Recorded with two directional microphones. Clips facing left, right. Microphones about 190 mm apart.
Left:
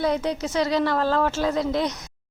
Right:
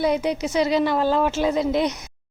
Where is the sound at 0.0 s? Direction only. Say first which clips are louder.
Right 2 dB; 15° right (ahead or behind).